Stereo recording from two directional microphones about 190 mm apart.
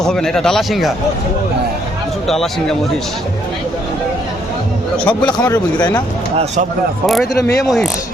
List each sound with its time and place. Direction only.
0.0 s speech: 5° left (ahead or behind)
2.2 s speech: centre (ahead or behind)
5.0 s speech: 5° left (ahead or behind)
5.5 s speech: 15° left (ahead or behind)
6.3 s speech: 35° right (ahead or behind)
7.6 s speech: centre (ahead or behind)